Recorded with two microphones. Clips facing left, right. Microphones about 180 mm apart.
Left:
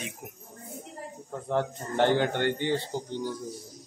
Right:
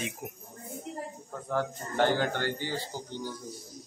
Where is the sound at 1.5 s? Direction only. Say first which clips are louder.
Left 3 dB; 20° left (ahead or behind).